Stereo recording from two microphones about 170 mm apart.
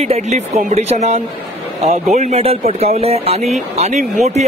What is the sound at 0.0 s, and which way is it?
Speech, 40° right (ahead or behind).